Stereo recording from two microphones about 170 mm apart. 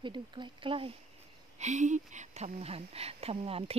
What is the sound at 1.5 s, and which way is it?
Speech, 45° right (ahead or behind).